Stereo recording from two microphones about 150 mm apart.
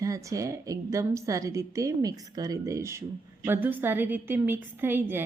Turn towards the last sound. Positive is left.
turn(degrees=-15)  # may be behind; listen again after turning